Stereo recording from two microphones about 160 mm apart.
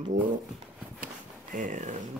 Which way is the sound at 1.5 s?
50° right (ahead or behind).